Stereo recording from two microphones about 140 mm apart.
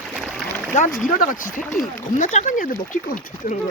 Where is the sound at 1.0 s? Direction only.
70° left (ahead or behind).